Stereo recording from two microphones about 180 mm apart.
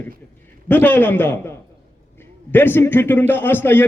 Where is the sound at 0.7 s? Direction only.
10° left (ahead or behind).